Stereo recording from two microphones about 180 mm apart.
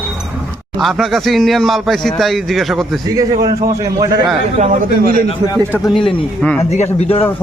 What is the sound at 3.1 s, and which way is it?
A man's voice, 20° right (ahead or behind).